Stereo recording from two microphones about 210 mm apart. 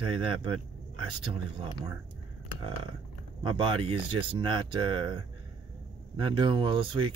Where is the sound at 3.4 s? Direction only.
25° right (ahead or behind).